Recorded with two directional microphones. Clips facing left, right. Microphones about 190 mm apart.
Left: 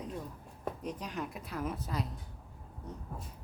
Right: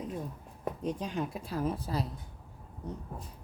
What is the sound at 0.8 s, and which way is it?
A woman's voice, 30° right (ahead or behind).